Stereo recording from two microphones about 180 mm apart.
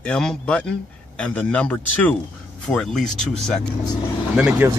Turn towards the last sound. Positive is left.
turn(degrees=-10)  # may be behind; listen again after turning